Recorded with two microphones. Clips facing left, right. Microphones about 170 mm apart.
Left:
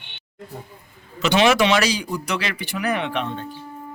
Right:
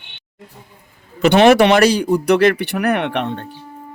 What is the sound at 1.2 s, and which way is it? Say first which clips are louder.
A man's voice: right 7 dB; 55° right (ahead or behind).